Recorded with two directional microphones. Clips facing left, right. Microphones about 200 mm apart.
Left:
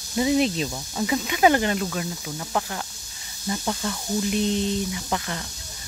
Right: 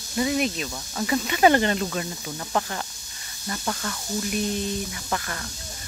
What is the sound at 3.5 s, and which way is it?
Speech, 15° left (ahead or behind).